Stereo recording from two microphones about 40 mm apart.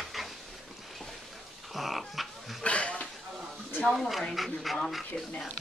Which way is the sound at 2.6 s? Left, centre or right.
Left.